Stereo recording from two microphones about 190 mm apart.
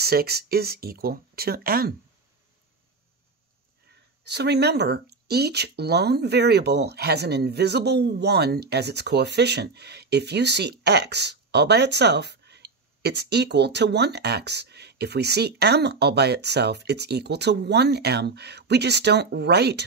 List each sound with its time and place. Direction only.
0.0 s speech: 55° right (ahead or behind)
3.9 s speech: 60° right (ahead or behind)